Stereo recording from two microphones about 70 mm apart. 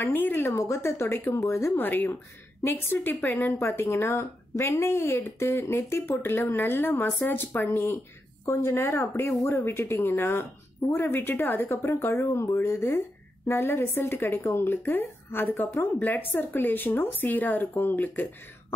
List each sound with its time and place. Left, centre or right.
0.0 s a woman's voice: left
1.8 s a woman's voice: left
9.7 s speech: left
12.3 s a woman's voice: left
12.6 s a woman's voice: left